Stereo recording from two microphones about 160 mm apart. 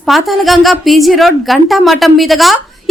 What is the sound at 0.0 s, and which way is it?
A woman's voice, centre (ahead or behind).